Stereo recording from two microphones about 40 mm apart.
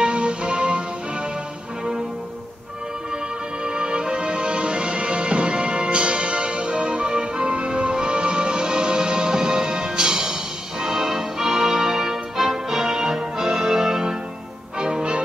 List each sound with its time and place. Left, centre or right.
0.0 s music: right
3.6 s music: right